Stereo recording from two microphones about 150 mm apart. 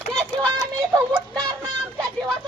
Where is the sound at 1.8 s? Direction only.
5° left (ahead or behind).